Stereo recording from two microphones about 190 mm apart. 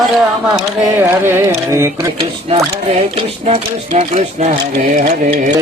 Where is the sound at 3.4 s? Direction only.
35° right (ahead or behind).